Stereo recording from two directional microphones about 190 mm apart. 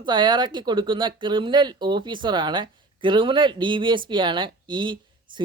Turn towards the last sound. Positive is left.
turn(degrees=-25)  # may be behind; listen again after turning